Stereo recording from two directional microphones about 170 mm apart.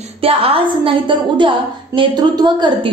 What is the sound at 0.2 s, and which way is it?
A woman's voice, 35° right (ahead or behind).